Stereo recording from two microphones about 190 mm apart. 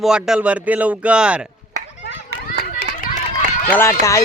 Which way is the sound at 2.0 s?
60° left (ahead or behind).